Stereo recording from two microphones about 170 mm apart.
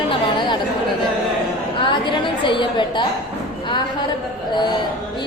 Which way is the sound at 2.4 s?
30° left (ahead or behind).